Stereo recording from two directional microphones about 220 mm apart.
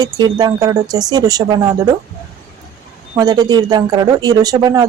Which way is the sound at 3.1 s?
15° right (ahead or behind).